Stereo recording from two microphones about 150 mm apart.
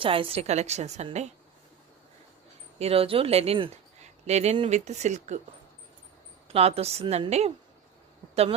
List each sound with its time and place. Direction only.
0.0 s a woman's voice: 35° right (ahead or behind)
2.7 s a woman's voice: 40° right (ahead or behind)
6.5 s a woman's voice: 40° right (ahead or behind)